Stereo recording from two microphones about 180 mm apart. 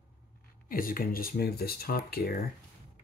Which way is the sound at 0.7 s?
50° left (ahead or behind).